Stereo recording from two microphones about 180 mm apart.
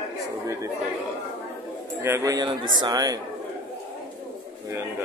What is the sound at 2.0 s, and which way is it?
A man's voice, 15° right (ahead or behind).